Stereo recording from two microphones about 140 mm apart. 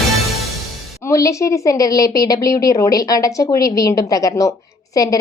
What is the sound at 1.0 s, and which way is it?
A woman's voice, 20° left (ahead or behind).